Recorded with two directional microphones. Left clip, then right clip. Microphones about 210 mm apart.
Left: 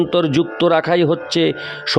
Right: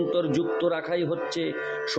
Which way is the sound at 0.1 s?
50° left (ahead or behind).